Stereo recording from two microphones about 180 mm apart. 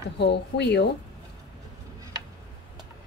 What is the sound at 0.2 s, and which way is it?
Speech, 70° left (ahead or behind).